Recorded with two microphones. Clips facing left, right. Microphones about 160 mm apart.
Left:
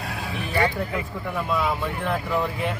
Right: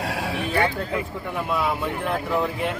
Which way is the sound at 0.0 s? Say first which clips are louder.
Right 5 dB; 75° right (ahead or behind).